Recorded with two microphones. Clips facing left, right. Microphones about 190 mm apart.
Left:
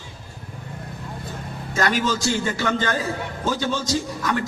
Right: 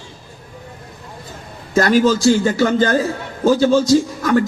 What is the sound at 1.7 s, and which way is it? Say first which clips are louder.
A man's voice: right 9 dB; 40° right (ahead or behind).